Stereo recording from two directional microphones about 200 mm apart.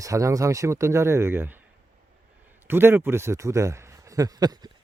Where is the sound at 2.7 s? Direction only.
10° right (ahead or behind).